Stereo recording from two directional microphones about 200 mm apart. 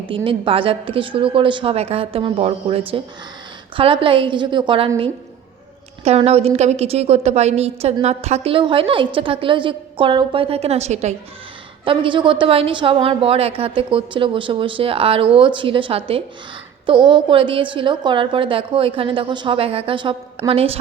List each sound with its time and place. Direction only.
0.3 s a woman's voice: 25° right (ahead or behind)
6.1 s a woman's voice: 30° right (ahead or behind)